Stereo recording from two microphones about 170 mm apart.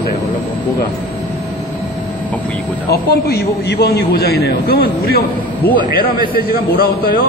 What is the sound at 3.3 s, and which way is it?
A man's voice, 70° left (ahead or behind).